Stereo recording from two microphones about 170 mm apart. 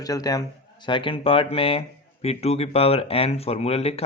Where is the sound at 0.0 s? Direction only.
20° left (ahead or behind).